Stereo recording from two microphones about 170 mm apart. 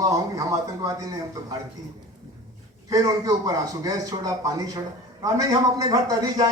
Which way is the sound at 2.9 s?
20° right (ahead or behind).